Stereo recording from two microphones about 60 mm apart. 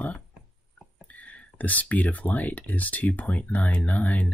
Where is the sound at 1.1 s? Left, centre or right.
Left.